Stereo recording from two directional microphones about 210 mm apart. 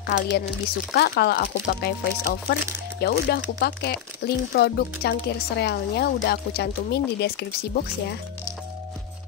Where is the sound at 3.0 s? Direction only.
50° left (ahead or behind).